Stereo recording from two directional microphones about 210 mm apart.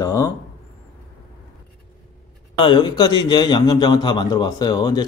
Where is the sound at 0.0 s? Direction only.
15° left (ahead or behind).